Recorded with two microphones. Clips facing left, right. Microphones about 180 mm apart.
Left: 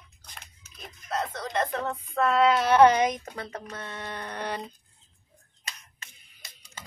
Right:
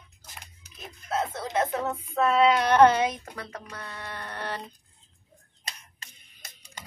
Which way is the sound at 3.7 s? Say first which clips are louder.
Left 2 dB; 25° left (ahead or behind).